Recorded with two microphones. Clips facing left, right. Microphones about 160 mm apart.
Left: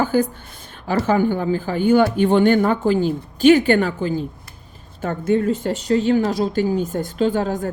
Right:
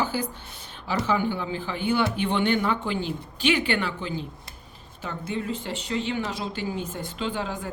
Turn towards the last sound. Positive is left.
turn(degrees=45)  # may be behind; listen again after turning